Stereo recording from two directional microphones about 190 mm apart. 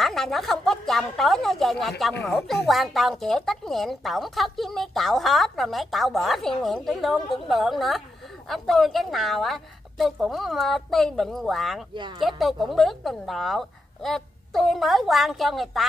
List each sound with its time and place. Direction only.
0.0 s a woman's voice: centre (ahead or behind)